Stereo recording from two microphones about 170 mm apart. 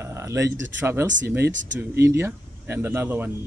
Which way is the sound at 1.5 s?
90° right.